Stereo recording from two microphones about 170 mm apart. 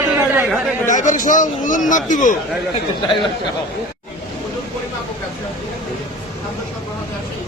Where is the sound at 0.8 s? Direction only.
45° left (ahead or behind).